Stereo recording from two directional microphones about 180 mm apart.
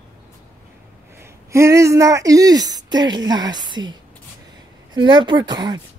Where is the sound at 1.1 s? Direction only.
15° right (ahead or behind).